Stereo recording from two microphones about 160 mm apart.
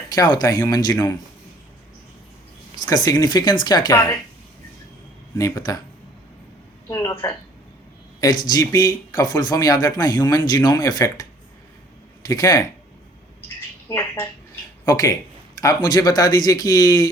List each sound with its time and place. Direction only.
0.1 s speech: 25° left (ahead or behind)
2.7 s speech: 25° left (ahead or behind)
5.4 s speech: 20° left (ahead or behind)
6.8 s speech: 20° left (ahead or behind)
8.2 s speech: 25° left (ahead or behind)
13.8 s speech: 15° left (ahead or behind)